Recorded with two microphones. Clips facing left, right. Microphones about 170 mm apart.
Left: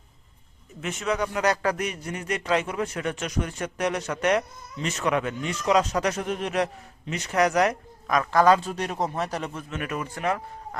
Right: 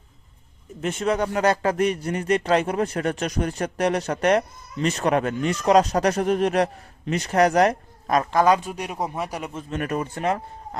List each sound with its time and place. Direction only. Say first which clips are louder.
0.8 s speech: right 4 dB; 30° right (ahead or behind)
8.4 s speech: left 2 dB; 15° right (ahead or behind)
9.6 s speech: right 5 dB; 40° right (ahead or behind)